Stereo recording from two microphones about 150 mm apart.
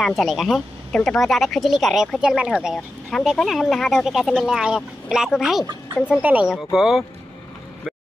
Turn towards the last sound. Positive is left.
turn(degrees=-5)  # may be behind; listen again after turning